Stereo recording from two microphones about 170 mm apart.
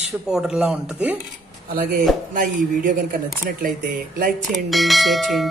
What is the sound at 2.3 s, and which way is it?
Speech, 55° right (ahead or behind).